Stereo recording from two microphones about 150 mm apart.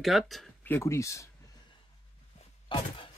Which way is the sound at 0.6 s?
15° left (ahead or behind).